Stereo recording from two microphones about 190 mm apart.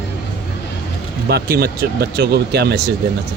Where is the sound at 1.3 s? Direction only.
55° right (ahead or behind).